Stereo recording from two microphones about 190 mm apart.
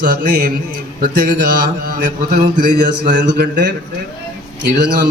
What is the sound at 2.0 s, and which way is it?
A man's voice, 45° right (ahead or behind).